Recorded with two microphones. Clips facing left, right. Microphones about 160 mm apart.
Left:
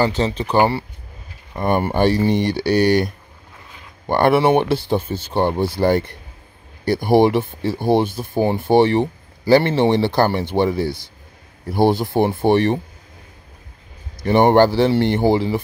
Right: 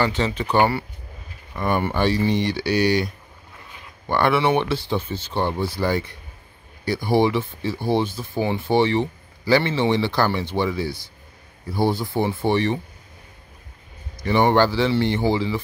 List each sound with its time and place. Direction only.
0.0 s speech: 35° left (ahead or behind)
1.6 s speech: 40° left (ahead or behind)
4.1 s speech: 45° left (ahead or behind)
12.2 s speech: 55° left (ahead or behind)
14.2 s speech: 50° left (ahead or behind)